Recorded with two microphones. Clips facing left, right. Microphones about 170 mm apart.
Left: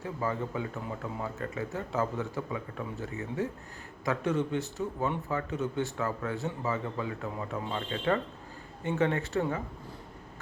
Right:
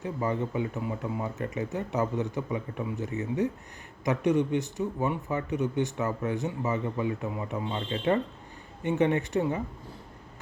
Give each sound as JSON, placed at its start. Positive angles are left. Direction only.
{"t": 0.0, "sound": "speech", "side_deg": -20}